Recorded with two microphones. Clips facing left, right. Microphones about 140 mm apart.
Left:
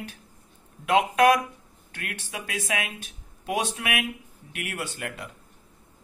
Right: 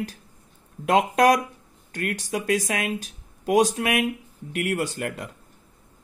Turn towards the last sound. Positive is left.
turn(degrees=-40)  # may be behind; listen again after turning